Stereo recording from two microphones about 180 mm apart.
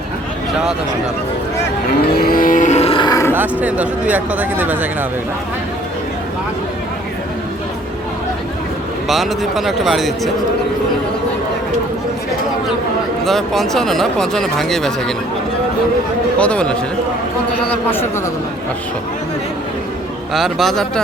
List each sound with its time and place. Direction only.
2.1 s cattle: 55° left (ahead or behind); by 3.3 s 20° left (ahead or behind)
3.3 s speech: 10° right (ahead or behind)
9.0 s speech: centre (ahead or behind)
13.2 s speech: centre (ahead or behind)
16.4 s speech: 5° left (ahead or behind)
20.3 s speech: centre (ahead or behind)